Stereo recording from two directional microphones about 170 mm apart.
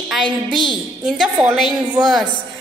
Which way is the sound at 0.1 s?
Centre (ahead or behind).